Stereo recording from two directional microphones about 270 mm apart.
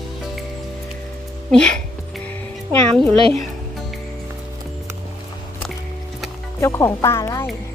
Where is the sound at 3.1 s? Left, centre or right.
Right.